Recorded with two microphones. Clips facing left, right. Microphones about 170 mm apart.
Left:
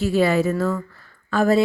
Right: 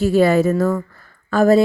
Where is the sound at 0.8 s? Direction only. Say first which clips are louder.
Right 4 dB; 45° right (ahead or behind).